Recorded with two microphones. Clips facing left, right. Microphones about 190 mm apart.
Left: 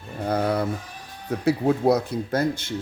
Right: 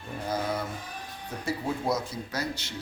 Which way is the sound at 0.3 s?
65° left (ahead or behind).